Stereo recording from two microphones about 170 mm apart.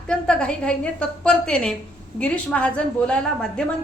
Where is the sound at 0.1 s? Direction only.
5° left (ahead or behind).